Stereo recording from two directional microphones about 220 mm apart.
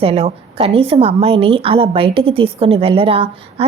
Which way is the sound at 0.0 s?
25° right (ahead or behind).